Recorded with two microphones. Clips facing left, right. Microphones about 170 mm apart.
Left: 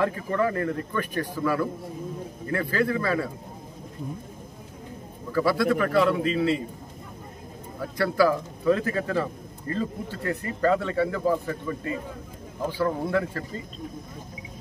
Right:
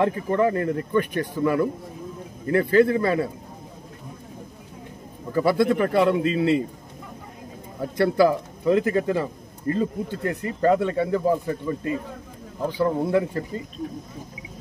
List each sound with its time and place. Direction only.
0.0 s speech: 25° right (ahead or behind)
5.3 s speech: 20° right (ahead or behind)
7.8 s speech: 25° right (ahead or behind)